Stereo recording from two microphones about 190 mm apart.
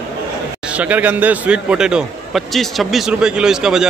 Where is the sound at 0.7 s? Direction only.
5° right (ahead or behind).